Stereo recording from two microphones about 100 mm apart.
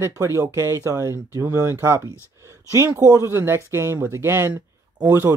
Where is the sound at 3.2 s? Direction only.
25° right (ahead or behind).